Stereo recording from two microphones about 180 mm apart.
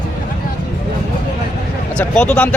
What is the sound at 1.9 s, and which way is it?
Speech, 5° left (ahead or behind).